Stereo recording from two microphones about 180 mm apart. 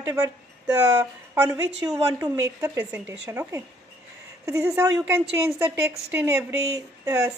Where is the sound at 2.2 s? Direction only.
15° right (ahead or behind).